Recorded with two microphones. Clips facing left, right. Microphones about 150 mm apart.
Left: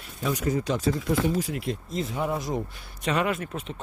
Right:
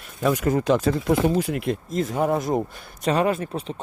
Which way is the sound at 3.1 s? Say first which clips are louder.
Right 5 dB; 30° right (ahead or behind).